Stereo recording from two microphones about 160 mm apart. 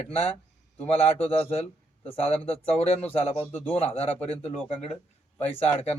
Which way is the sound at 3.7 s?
40° left (ahead or behind).